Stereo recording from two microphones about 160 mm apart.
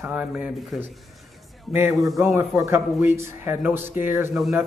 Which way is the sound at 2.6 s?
15° right (ahead or behind).